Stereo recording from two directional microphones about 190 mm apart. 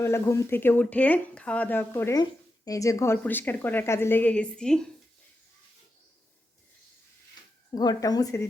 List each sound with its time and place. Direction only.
0.0 s speech: 15° left (ahead or behind)
7.7 s speech: 20° left (ahead or behind)